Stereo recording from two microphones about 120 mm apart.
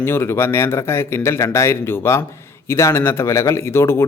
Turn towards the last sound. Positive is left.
turn(degrees=20)  # may be behind; listen again after turning